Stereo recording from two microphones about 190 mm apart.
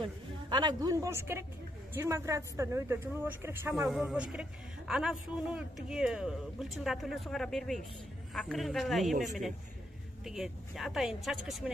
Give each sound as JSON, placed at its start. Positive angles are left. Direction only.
{"t": 0.0, "sound": "a woman's voice", "side_deg": -25}